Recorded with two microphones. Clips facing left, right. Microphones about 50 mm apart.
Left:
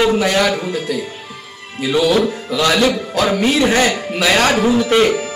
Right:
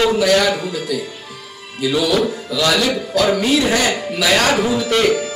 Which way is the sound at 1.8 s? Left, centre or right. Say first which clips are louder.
Left 2 dB; left.